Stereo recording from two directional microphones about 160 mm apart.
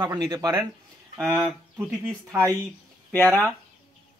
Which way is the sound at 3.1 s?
10° left (ahead or behind).